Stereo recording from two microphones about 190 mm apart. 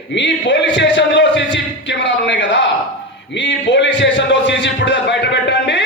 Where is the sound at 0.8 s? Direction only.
70° left (ahead or behind).